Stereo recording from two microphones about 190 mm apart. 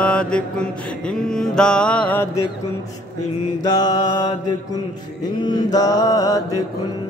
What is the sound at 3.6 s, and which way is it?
Mantra, 20° left (ahead or behind).